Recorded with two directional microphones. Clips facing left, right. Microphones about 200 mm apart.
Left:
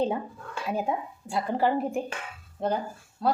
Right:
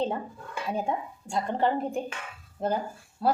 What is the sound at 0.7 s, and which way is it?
A woman's voice, 5° left (ahead or behind).